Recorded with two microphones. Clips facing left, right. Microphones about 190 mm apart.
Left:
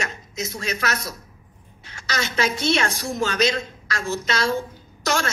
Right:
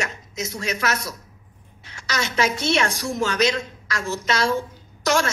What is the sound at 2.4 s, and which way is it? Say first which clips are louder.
A woman's voice: even; 30° left (ahead or behind).